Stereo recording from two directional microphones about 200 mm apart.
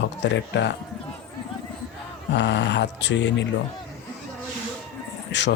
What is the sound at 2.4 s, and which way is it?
Speech, 60° left (ahead or behind).